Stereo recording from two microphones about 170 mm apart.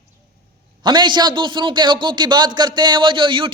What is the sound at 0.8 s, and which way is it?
A man's voice, 25° right (ahead or behind).